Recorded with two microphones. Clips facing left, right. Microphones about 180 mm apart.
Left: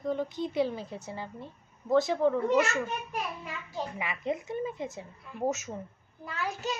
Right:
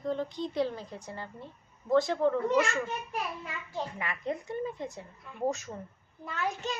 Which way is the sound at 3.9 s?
15° left (ahead or behind).